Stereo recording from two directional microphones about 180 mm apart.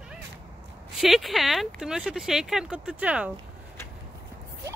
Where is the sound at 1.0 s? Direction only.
Centre (ahead or behind).